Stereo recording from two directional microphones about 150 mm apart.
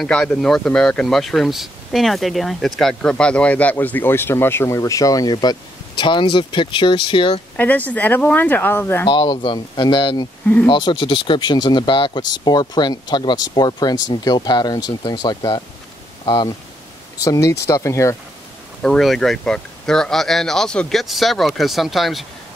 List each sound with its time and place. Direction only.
0.0 s speech: 5° left (ahead or behind); by 7.4 s 35° left (ahead or behind)
7.5 s speech: 10° left (ahead or behind)
9.0 s speech: 30° left (ahead or behind)
18.8 s speech: 5° left (ahead or behind)